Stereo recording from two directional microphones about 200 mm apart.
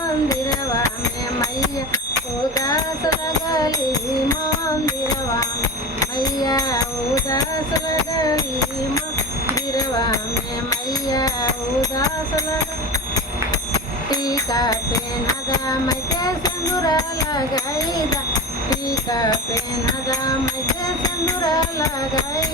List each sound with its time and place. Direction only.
0.3 s music: 15° left (ahead or behind)
2.6 s music: 20° left (ahead or behind)
9.6 s a sound: 20° left (ahead or behind)
10.7 s music: 20° left (ahead or behind)
14.1 s music: 20° left (ahead or behind)
18.7 s speech: 20° left (ahead or behind)
19.8 s music: 20° left (ahead or behind)